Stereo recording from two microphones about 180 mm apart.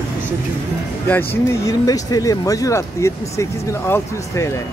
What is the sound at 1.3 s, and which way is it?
Speech, 15° left (ahead or behind).